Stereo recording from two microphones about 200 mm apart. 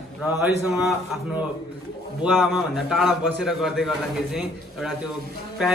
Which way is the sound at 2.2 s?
Centre (ahead or behind).